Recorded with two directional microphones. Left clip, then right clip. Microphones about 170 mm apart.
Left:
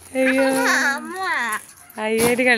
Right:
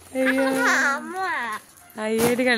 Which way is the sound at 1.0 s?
45° left (ahead or behind).